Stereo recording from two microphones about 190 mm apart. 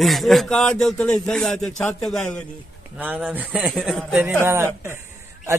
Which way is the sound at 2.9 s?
10° right (ahead or behind).